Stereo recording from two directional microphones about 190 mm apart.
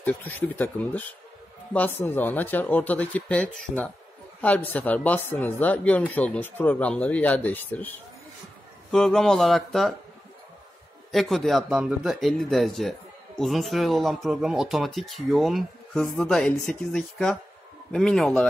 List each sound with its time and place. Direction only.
0.0 s speech: 10° left (ahead or behind)
8.9 s speech: centre (ahead or behind)
11.1 s speech: centre (ahead or behind)